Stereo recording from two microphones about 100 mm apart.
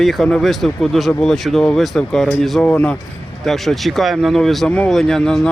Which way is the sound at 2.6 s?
15° left (ahead or behind).